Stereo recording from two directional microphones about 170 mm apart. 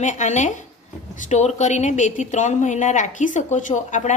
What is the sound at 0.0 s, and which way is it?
A woman's voice, 45° left (ahead or behind).